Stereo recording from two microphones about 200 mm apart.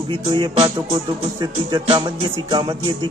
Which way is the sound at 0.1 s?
25° right (ahead or behind).